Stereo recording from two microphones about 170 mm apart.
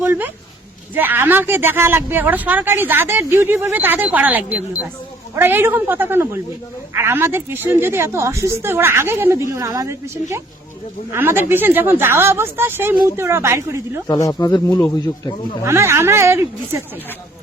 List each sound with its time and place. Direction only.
0.0 s speech: 10° right (ahead or behind)
14.1 s speech: 20° left (ahead or behind)
15.6 s speech: 15° right (ahead or behind)